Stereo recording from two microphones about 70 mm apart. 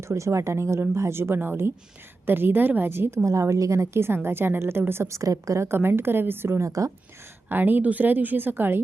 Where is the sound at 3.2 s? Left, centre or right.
Right.